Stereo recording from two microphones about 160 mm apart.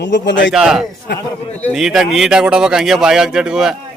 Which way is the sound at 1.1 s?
90° left.